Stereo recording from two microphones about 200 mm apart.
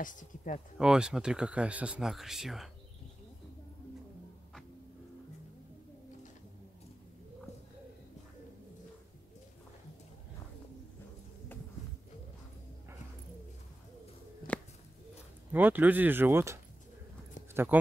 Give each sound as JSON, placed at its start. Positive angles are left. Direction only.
{"t": 0.0, "sound": "speech", "side_deg": 40}
{"t": 0.7, "sound": "speech", "side_deg": -5}
{"t": 15.5, "sound": "speech", "side_deg": -10}
{"t": 17.6, "sound": "speech", "side_deg": -10}